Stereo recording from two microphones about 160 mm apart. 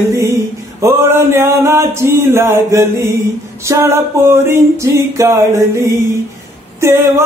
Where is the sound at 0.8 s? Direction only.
15° right (ahead or behind).